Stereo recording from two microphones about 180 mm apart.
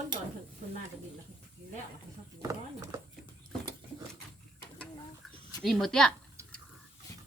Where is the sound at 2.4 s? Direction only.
15° right (ahead or behind).